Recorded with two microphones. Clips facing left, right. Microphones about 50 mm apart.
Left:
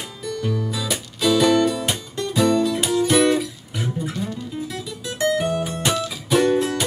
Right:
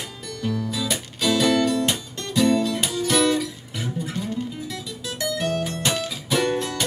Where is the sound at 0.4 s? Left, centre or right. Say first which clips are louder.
Even; centre.